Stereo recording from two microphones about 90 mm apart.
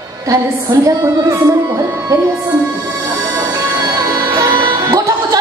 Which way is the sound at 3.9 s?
45° right (ahead or behind).